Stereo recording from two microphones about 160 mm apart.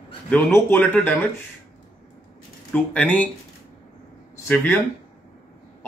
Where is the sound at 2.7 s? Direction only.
10° left (ahead or behind).